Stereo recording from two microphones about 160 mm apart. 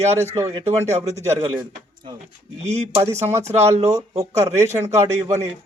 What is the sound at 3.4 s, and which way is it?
Speech, 45° right (ahead or behind).